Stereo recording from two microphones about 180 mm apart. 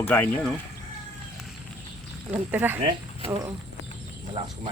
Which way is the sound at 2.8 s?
30° right (ahead or behind).